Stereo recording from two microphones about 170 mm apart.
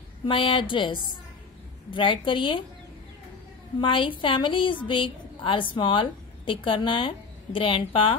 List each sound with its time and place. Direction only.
0.3 s a woman's voice: 30° left (ahead or behind)
3.8 s a woman's voice: 30° left (ahead or behind)